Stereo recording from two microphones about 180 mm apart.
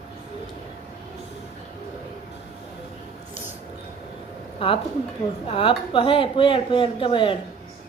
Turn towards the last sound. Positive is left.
turn(degrees=30)  # may be behind; listen again after turning